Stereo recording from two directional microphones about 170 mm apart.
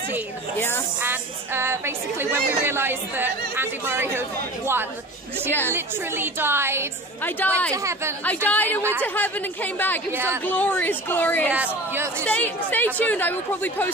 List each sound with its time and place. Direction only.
1.0 s a woman's voice: 15° right (ahead or behind)
5.7 s a woman's voice: 15° right (ahead or behind)
7.2 s a woman's voice: 10° left (ahead or behind)
7.7 s a woman's voice: 15° right (ahead or behind)
8.5 s a woman's voice: 10° left (ahead or behind)
10.1 s a woman's voice: 15° right (ahead or behind)
10.4 s a woman's voice: 10° left (ahead or behind)
11.4 s a woman's voice: 10° right (ahead or behind)
12.3 s a woman's voice: 10° left (ahead or behind)